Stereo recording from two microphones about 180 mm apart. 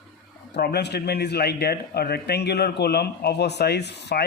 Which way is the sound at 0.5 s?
65° left (ahead or behind).